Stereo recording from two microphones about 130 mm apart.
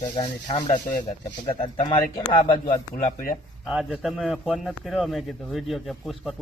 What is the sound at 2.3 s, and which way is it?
Speech, 40° left (ahead or behind).